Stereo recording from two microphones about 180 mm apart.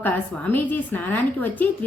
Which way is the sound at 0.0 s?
10° left (ahead or behind).